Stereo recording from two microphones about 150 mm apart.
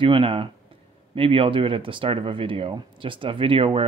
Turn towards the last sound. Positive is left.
turn(degrees=-35)  # may be behind; listen again after turning